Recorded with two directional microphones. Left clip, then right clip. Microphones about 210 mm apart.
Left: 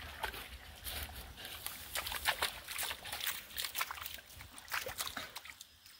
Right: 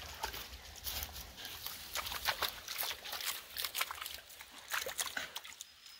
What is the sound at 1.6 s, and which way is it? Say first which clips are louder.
Horse: even; 20° left (ahead or behind).